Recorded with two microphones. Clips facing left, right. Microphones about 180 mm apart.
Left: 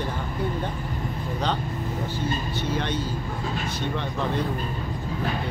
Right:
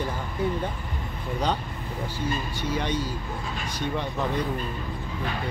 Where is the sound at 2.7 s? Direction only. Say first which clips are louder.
Right 1 dB; 10° right (ahead or behind).